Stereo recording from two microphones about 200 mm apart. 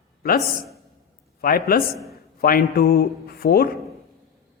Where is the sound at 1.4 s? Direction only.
45° left (ahead or behind).